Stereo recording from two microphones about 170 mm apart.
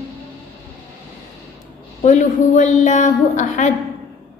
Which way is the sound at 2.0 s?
45° left (ahead or behind).